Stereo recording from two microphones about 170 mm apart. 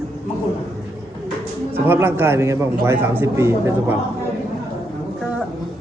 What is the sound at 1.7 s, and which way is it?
A man's voice, 10° right (ahead or behind).